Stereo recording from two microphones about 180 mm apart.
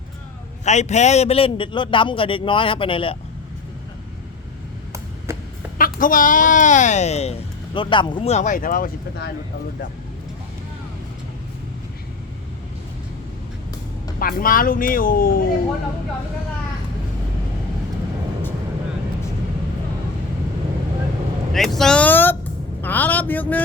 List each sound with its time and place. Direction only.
0.6 s a man's voice: 40° left (ahead or behind)
5.7 s speech: 50° left (ahead or behind)
14.2 s speech: 50° left (ahead or behind)
21.5 s a man's voice: centre (ahead or behind)